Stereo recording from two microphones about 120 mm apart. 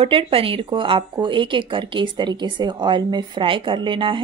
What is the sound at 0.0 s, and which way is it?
A woman's voice, 50° right (ahead or behind).